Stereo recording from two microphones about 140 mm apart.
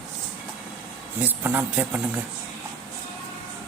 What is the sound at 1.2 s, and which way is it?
Speech, 15° right (ahead or behind).